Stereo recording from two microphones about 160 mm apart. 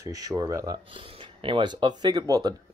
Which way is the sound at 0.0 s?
20° right (ahead or behind).